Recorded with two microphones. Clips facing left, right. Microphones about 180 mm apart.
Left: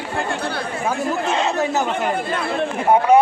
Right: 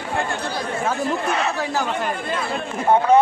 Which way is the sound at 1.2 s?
25° left (ahead or behind).